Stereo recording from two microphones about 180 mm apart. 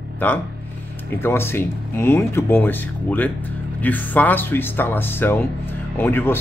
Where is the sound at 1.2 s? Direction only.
15° left (ahead or behind).